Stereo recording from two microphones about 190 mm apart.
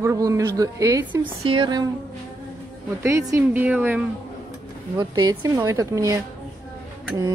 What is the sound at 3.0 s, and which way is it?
Speech, 15° right (ahead or behind).